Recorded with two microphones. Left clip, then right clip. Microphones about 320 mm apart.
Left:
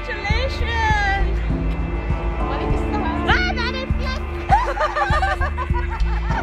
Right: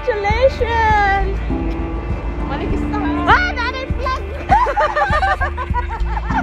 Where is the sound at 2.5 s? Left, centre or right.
Centre.